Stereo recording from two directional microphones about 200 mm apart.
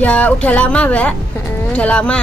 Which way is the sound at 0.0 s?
5° left (ahead or behind).